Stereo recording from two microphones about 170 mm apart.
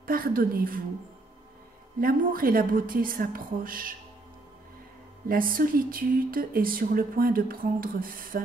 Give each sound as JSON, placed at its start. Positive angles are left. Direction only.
{"t": 0.0, "sound": "a woman's voice", "side_deg": -55}
{"t": 2.0, "sound": "speech", "side_deg": -60}
{"t": 5.3, "sound": "speech", "side_deg": -55}